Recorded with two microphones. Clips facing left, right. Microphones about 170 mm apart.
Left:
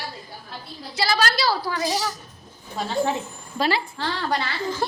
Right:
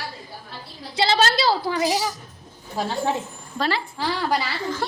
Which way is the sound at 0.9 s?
25° right (ahead or behind).